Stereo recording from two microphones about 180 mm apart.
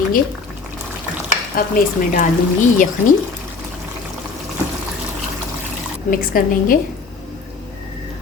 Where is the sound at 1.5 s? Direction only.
50° left (ahead or behind).